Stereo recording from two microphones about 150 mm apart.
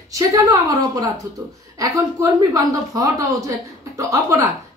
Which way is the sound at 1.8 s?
20° right (ahead or behind).